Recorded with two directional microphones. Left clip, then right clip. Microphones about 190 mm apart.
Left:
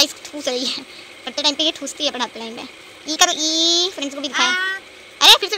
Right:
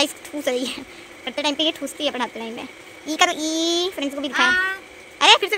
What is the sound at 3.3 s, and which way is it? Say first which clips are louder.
Speech: left 5 dB; 30° right (ahead or behind).